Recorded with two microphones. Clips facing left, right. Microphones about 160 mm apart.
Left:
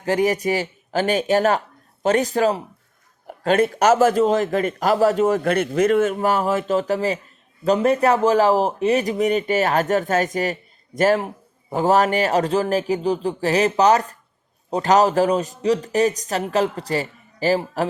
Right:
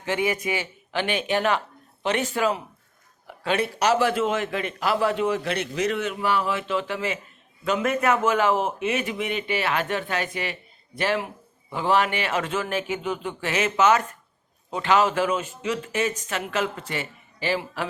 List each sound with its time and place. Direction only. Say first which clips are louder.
0.0 s a man's voice: left 6 dB; 40° left (ahead or behind)